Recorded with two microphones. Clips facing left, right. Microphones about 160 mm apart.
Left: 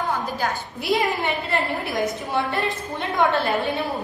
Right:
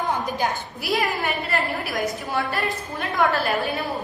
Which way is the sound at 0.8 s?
20° left (ahead or behind).